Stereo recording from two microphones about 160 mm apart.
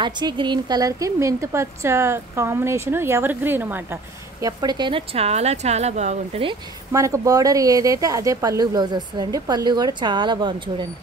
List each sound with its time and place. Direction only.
0.0 s a woman's voice: 30° right (ahead or behind); by 6.4 s 45° right (ahead or behind)
6.9 s a woman's voice: 20° right (ahead or behind)